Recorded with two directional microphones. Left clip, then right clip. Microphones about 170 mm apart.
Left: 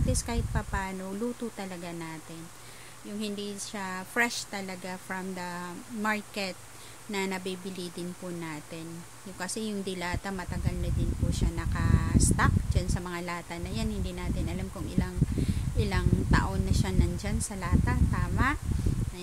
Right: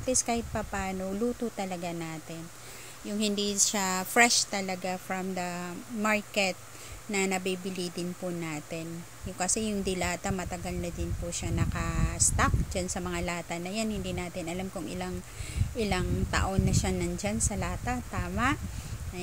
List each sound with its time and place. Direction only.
0.0 s speech: 10° right (ahead or behind)
3.2 s speech: 35° right (ahead or behind); by 18.6 s 10° right (ahead or behind)